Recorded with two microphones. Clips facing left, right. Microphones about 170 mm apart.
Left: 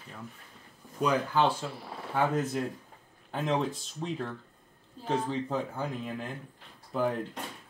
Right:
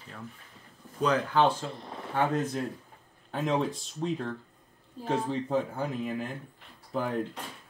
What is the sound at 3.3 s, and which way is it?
Speech, centre (ahead or behind).